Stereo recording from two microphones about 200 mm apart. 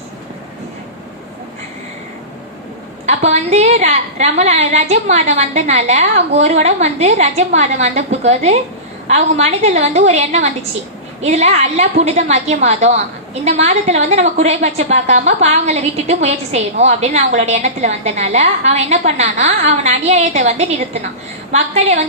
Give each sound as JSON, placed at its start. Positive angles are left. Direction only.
{"t": 3.1, "sound": "a woman's voice", "side_deg": -35}